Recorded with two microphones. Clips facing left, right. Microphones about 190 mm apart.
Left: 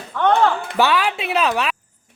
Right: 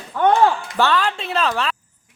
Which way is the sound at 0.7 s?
10° left (ahead or behind).